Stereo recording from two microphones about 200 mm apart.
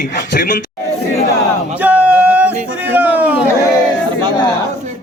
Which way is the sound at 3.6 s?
15° left (ahead or behind).